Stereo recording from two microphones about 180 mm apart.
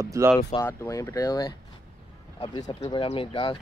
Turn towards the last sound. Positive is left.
turn(degrees=25)  # may be behind; listen again after turning